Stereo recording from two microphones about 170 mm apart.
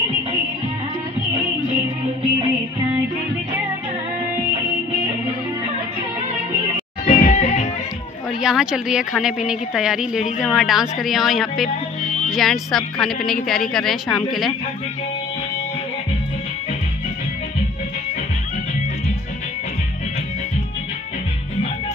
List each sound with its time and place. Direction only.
7.1 s music: 40° left (ahead or behind)
8.4 s a woman's voice: 5° right (ahead or behind)